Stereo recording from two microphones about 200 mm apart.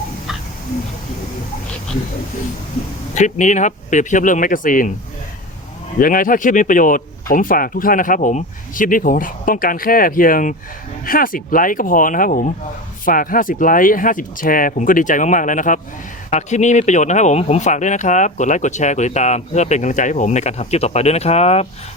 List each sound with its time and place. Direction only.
3.2 s speech: 35° left (ahead or behind)
6.0 s speech: 45° left (ahead or behind)